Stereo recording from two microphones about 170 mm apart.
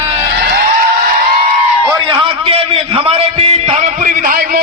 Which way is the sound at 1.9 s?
30° right (ahead or behind).